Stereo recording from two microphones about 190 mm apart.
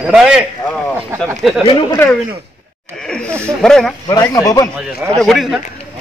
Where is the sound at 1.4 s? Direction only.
Centre (ahead or behind).